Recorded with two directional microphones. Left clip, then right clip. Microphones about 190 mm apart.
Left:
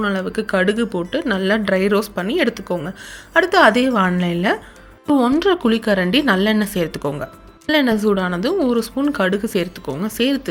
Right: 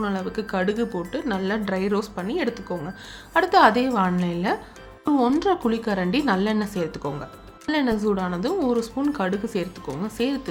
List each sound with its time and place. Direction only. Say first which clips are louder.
0.0 s a woman's voice: left 6 dB; 20° left (ahead or behind)